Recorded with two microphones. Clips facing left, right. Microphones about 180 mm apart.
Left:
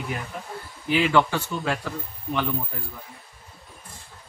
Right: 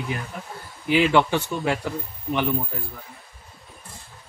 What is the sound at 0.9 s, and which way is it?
Speech, 20° right (ahead or behind).